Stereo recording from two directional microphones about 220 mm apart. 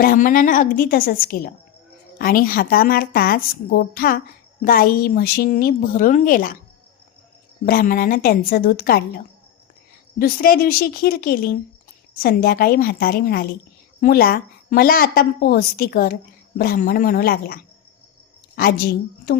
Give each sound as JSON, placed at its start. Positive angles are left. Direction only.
{"t": 0.0, "sound": "a woman's voice", "side_deg": 40}
{"t": 7.6, "sound": "a woman's voice", "side_deg": 40}
{"t": 10.2, "sound": "a woman's voice", "side_deg": 40}